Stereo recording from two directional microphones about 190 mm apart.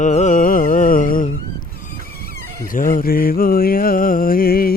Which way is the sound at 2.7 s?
45° left (ahead or behind).